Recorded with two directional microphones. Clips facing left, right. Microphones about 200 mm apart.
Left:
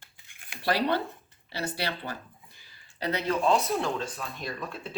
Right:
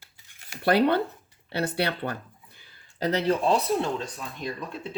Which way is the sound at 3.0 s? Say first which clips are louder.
Right 5 dB; 45° right (ahead or behind).